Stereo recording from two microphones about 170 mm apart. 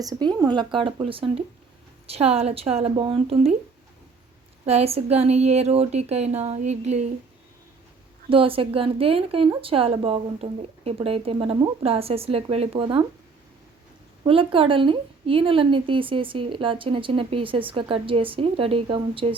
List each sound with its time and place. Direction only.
0.0 s a woman's voice: 25° right (ahead or behind)
4.6 s a woman's voice: 35° right (ahead or behind)
8.3 s a woman's voice: 30° right (ahead or behind)
14.3 s a woman's voice: 30° right (ahead or behind)